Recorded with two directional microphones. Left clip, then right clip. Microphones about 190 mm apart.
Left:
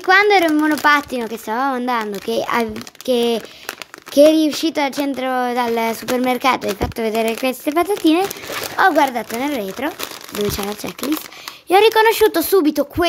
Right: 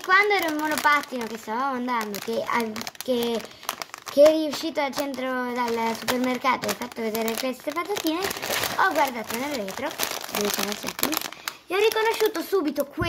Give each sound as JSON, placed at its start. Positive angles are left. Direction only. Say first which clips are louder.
{"t": 0.1, "sound": "speech", "louder": "left 8 dB", "side_deg": 50}
{"t": 11.7, "sound": "speech", "louder": "left 10 dB", "side_deg": 65}